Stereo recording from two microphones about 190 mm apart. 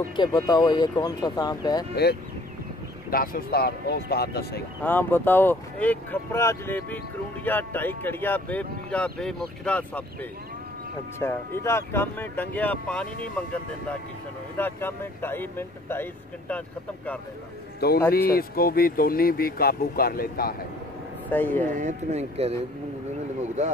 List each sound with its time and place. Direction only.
0.1 s speech: 20° left (ahead or behind)
3.1 s speech: 50° left (ahead or behind)
4.8 s speech: 10° left (ahead or behind)
11.1 s speech: 15° left (ahead or behind)
17.7 s a man's voice: 55° left (ahead or behind)
21.3 s speech: 10° left (ahead or behind)
21.7 s speech: 40° right (ahead or behind)